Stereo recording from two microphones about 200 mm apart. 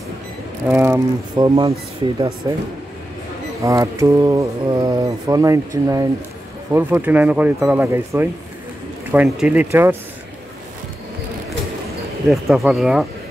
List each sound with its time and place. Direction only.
0.7 s speech: 10° right (ahead or behind)
3.6 s speech: 15° right (ahead or behind)
12.3 s speech: centre (ahead or behind)